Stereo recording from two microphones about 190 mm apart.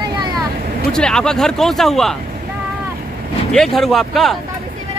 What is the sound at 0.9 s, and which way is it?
Speech, 5° left (ahead or behind).